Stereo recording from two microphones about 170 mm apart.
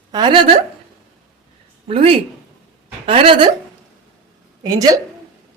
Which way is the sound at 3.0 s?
30° right (ahead or behind).